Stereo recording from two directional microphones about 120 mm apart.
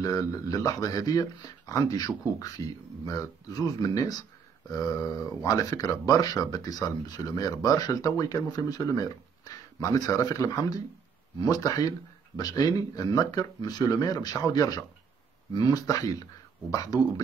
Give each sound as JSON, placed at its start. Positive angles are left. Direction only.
{"t": 0.0, "sound": "speech", "side_deg": 30}